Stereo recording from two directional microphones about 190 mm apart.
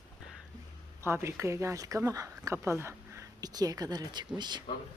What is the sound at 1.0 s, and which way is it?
Speech, 15° right (ahead or behind).